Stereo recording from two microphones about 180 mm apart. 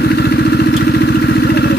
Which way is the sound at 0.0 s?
65° left (ahead or behind).